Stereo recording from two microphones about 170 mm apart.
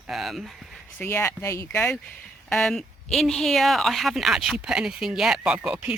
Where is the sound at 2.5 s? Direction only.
5° left (ahead or behind).